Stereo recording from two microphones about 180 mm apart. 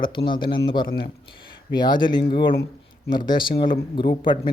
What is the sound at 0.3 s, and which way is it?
Speech, 25° left (ahead or behind).